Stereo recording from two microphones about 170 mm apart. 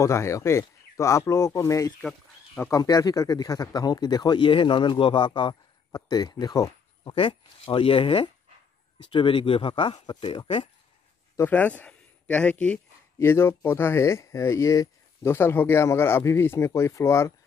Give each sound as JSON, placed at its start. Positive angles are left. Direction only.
{"t": 0.0, "sound": "speech", "side_deg": 15}
{"t": 2.0, "sound": "a sound", "side_deg": 5}
{"t": 2.7, "sound": "speech", "side_deg": 20}
{"t": 11.3, "sound": "speech", "side_deg": 10}